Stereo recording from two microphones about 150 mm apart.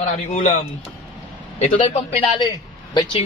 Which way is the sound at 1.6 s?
35° left (ahead or behind).